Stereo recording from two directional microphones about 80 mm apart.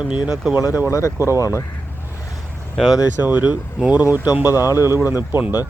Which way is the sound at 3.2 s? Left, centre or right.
Right.